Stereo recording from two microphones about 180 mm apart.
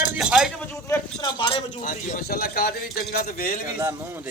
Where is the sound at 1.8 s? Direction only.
50° left (ahead or behind).